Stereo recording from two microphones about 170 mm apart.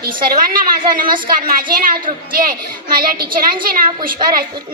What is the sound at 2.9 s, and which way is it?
Speech, 55° right (ahead or behind).